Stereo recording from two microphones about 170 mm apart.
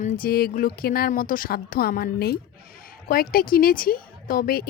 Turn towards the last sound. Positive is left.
turn(degrees=60)  # may be behind; listen again after turning